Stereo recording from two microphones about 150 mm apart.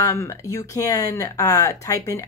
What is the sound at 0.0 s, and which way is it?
A woman's voice, 20° left (ahead or behind).